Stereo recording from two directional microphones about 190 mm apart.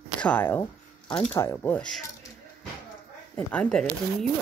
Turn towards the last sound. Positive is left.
turn(degrees=5)  # may be behind; listen again after turning